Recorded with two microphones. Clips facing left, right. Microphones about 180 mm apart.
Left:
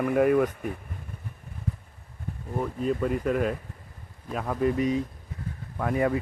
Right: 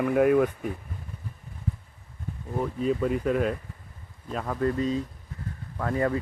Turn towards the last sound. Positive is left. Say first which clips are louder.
# left 1 dB
turn(degrees=10)  # may be behind; listen again after turning